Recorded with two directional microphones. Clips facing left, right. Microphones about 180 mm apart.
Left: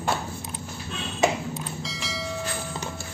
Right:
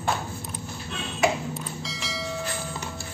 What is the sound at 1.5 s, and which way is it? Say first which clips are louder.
Bell: left 1 dB; centre (ahead or behind).